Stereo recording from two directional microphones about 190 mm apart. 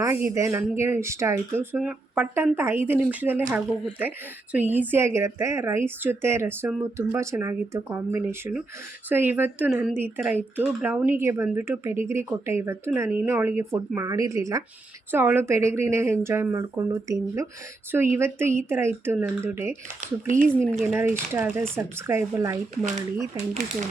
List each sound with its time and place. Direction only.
0.0 s speech: 15° right (ahead or behind)
4.5 s speech: 10° right (ahead or behind)
20.0 s speech: 40° right (ahead or behind)
20.8 s speech: 10° right (ahead or behind)